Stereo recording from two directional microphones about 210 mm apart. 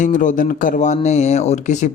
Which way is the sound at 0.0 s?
35° left (ahead or behind).